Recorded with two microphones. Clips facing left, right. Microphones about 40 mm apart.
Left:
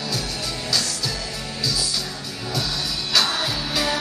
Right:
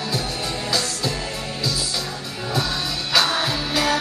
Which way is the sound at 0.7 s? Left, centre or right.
Right.